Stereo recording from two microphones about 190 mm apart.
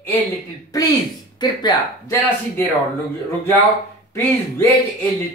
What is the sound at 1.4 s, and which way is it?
Speech, 20° left (ahead or behind).